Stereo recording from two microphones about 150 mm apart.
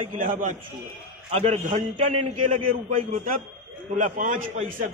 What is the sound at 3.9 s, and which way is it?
Speech, 55° right (ahead or behind).